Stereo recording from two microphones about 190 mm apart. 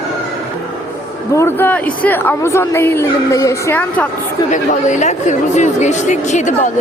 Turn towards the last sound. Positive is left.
turn(degrees=40)  # may be behind; listen again after turning